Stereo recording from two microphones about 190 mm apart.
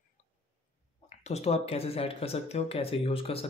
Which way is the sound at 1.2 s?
35° left (ahead or behind).